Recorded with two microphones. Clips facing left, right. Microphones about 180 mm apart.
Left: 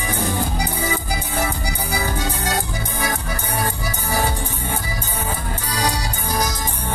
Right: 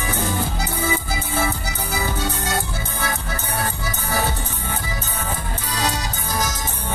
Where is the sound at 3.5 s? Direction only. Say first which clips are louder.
Left 2 dB; 10° left (ahead or behind).